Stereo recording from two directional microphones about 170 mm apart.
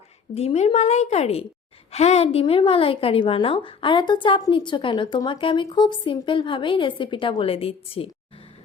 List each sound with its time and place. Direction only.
0.3 s a woman's voice: 40° left (ahead or behind)